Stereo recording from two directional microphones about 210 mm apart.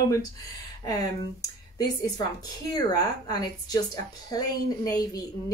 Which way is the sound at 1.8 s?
20° left (ahead or behind).